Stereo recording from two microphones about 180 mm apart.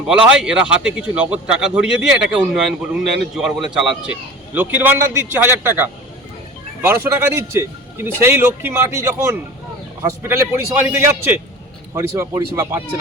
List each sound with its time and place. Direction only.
0.0 s a man's voice: 5° right (ahead or behind)